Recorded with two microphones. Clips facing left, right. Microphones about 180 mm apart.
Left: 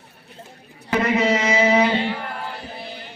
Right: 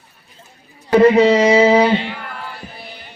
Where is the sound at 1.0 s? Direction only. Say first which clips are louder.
Right 9 dB; 35° right (ahead or behind).